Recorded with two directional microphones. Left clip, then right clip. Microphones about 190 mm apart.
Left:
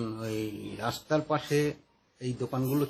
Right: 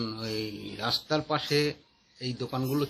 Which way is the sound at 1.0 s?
5° right (ahead or behind).